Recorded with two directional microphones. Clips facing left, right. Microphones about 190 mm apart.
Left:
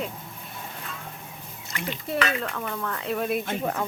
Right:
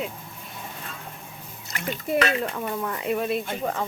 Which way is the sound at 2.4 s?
20° right (ahead or behind).